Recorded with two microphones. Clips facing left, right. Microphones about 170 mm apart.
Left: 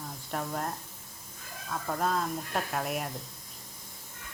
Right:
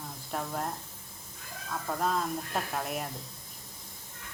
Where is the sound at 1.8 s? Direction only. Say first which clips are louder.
Even; centre (ahead or behind).